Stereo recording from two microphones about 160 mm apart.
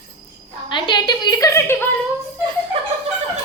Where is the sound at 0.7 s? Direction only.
30° left (ahead or behind).